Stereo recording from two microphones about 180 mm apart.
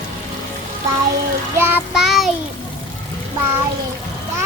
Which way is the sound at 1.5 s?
5° right (ahead or behind).